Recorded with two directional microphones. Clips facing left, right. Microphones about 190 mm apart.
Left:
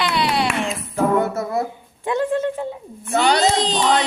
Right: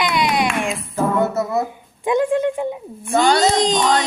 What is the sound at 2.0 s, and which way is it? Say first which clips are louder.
A woman's voice: right 3 dB; 15° right (ahead or behind).